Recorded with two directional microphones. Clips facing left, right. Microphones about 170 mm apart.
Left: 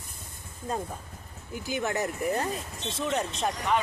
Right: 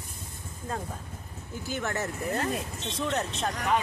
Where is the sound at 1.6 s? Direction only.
15° left (ahead or behind).